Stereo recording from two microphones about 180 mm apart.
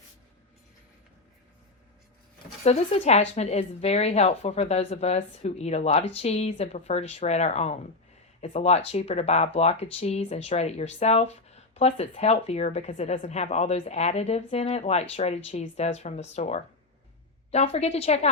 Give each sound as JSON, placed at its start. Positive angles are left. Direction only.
{"t": 2.6, "sound": "speech", "side_deg": 35}